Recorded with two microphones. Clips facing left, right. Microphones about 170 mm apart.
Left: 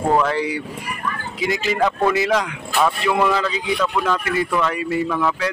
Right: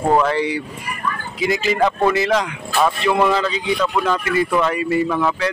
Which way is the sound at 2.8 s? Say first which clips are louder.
Right 2 dB; 5° right (ahead or behind).